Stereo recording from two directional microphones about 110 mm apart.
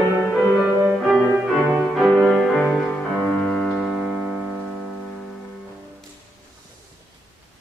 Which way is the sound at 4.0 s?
5° right (ahead or behind).